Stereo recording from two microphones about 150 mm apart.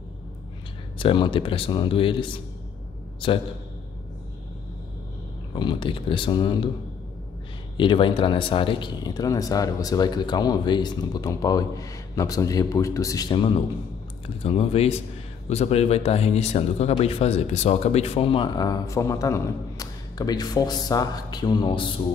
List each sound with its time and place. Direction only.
0.9 s speech: 35° left (ahead or behind)
5.5 s speech: 30° left (ahead or behind)
7.7 s speech: 35° left (ahead or behind)
14.4 s speech: 40° left (ahead or behind)